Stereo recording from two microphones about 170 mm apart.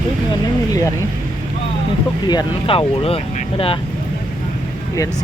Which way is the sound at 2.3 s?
30° left (ahead or behind).